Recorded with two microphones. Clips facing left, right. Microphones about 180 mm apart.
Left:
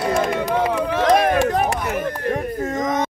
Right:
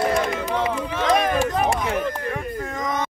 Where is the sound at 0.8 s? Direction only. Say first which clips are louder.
Left 6 dB; 65° left (ahead or behind).